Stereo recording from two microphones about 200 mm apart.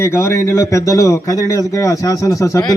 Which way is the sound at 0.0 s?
15° left (ahead or behind).